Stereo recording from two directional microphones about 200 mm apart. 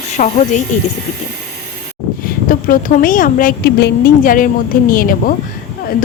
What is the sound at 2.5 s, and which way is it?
A woman's voice, 45° left (ahead or behind).